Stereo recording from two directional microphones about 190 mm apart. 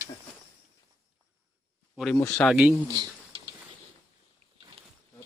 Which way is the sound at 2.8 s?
25° right (ahead or behind).